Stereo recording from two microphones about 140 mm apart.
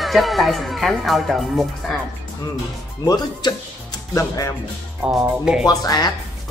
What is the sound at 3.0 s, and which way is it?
Speech, 30° left (ahead or behind).